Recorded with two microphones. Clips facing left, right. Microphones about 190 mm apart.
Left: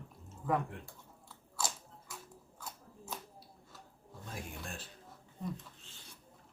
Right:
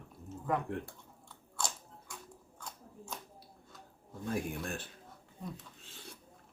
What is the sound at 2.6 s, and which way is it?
Shuffling cards, 5° left (ahead or behind).